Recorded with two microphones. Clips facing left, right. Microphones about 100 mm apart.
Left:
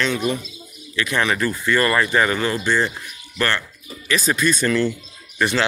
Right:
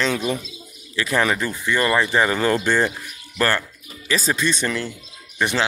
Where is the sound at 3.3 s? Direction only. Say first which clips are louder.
Right 2 dB; 35° right (ahead or behind); by 5.7 s 15° right (ahead or behind).